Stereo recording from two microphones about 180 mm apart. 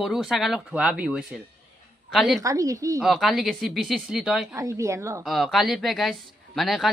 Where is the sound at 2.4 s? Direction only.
20° right (ahead or behind).